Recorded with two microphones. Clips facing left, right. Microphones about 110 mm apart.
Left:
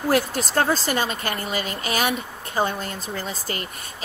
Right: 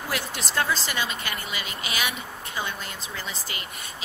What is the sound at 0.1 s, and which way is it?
Speech, 45° left (ahead or behind).